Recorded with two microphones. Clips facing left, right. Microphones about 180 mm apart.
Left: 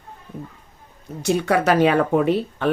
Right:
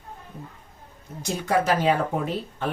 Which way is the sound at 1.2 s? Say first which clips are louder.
Left 5 dB; 70° left (ahead or behind).